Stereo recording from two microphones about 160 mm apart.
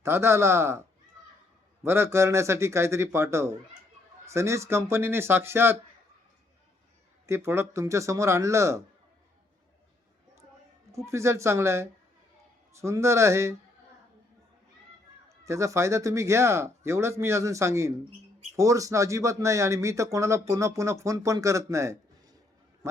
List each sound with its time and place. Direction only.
0.0 s speech: 15° right (ahead or behind)
1.8 s speech: 15° right (ahead or behind)
7.3 s speech: 15° right (ahead or behind)
10.9 s speech: 20° right (ahead or behind)
15.4 s speech: 20° right (ahead or behind)